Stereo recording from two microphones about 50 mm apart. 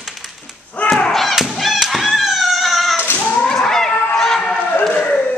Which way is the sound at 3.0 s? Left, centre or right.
Left.